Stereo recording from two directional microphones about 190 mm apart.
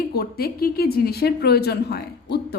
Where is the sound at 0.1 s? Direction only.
55° left (ahead or behind).